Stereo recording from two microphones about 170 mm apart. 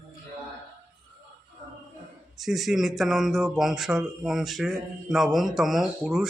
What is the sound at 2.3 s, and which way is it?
A man's voice, centre (ahead or behind).